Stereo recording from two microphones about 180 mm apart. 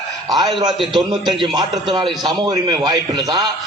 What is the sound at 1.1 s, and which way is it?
A man's voice, 25° right (ahead or behind).